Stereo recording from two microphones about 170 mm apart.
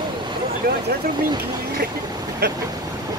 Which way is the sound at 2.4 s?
75° right (ahead or behind).